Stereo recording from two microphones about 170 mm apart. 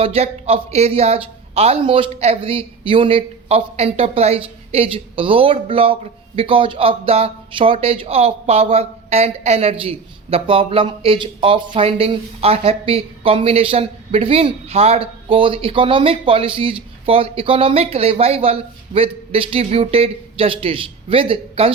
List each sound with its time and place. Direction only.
0.0 s a man's voice: 35° right (ahead or behind)